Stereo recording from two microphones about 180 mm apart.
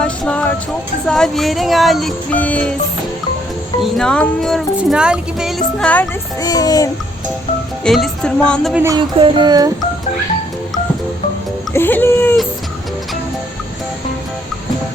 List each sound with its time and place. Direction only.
0.0 s music: 5° left (ahead or behind)
1.0 s speech: centre (ahead or behind)
3.9 s speech: 5° left (ahead or behind)
6.4 s music: 20° left (ahead or behind)
7.9 s speech: centre (ahead or behind)
8.7 s speech: 15° right (ahead or behind)
9.0 s speech: 30° right (ahead or behind)
11.7 s speech: 10° left (ahead or behind)